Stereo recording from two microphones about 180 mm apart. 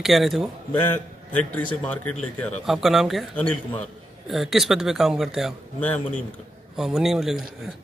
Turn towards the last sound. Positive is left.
turn(degrees=0)  # may be behind; listen again after turning